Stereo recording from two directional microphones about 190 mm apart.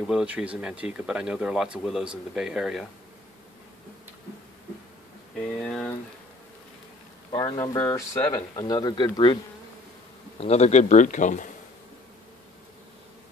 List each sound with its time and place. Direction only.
0.0 s speech: 5° right (ahead or behind)
5.6 s speech: 5° left (ahead or behind)
7.2 s speech: 20° left (ahead or behind)
10.4 s speech: 35° left (ahead or behind)